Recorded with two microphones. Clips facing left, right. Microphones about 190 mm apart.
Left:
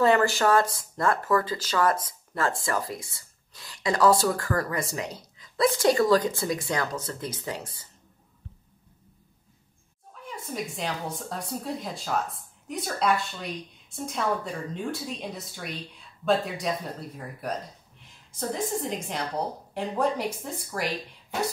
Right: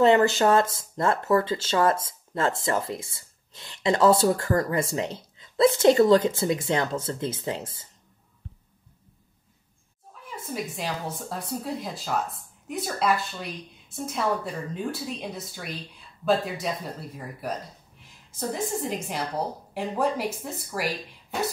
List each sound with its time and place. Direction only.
0.0 s speech: 20° right (ahead or behind)
10.2 s a woman's voice: 5° right (ahead or behind)
18.9 s a woman's voice: 5° right (ahead or behind)